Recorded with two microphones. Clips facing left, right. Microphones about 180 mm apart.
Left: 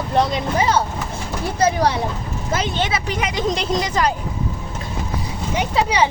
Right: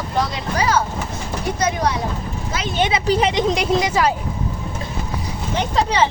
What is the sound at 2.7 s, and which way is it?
Speech, 20° right (ahead or behind).